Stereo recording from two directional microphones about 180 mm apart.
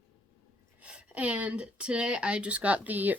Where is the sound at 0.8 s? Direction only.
5° right (ahead or behind).